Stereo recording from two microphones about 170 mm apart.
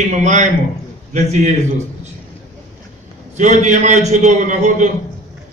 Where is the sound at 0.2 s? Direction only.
45° right (ahead or behind).